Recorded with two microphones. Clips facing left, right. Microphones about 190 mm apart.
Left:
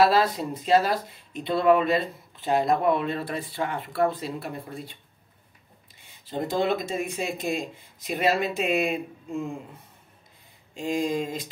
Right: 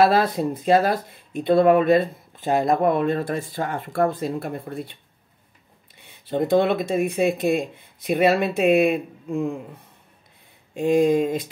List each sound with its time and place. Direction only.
0.0 s speech: 55° right (ahead or behind)
6.2 s speech: 60° right (ahead or behind)
10.7 s speech: 55° right (ahead or behind)